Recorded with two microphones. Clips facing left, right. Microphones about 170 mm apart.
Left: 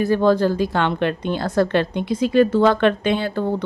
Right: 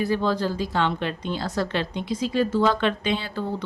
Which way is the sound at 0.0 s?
50° left (ahead or behind).